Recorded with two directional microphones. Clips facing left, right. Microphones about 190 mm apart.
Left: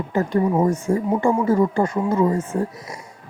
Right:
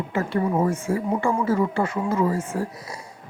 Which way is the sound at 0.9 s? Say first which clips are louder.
Left 4 dB; 20° left (ahead or behind).